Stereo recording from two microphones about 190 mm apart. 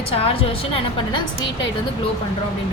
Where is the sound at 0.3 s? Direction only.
30° left (ahead or behind).